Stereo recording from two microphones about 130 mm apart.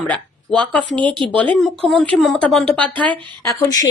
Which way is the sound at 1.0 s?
35° right (ahead or behind).